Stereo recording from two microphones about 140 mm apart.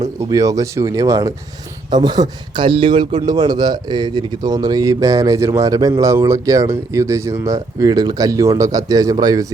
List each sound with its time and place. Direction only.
0.3 s a man's voice: 25° right (ahead or behind)